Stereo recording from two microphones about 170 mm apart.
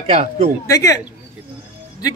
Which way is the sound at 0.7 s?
20° left (ahead or behind).